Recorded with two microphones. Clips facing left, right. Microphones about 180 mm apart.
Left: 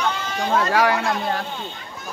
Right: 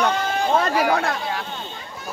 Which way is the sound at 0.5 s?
75° left (ahead or behind).